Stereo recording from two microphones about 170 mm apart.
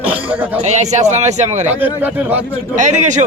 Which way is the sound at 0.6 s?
40° right (ahead or behind).